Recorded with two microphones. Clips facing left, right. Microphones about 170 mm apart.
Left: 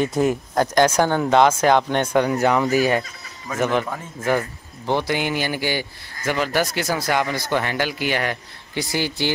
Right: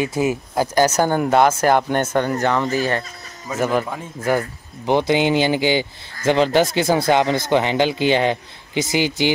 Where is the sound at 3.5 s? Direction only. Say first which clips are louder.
Right 1 dB; 10° right (ahead or behind).